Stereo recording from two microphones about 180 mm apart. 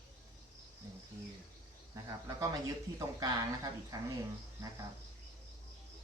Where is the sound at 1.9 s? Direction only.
20° right (ahead or behind).